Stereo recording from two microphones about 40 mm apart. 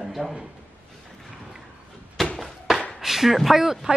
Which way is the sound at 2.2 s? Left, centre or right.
Centre.